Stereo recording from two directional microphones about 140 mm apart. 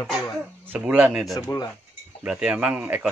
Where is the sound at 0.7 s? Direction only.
10° right (ahead or behind).